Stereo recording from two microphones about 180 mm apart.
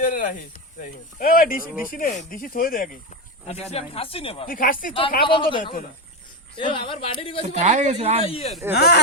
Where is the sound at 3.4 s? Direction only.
35° left (ahead or behind).